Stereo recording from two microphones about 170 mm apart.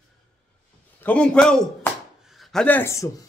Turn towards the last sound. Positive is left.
turn(degrees=15)  # may be behind; listen again after turning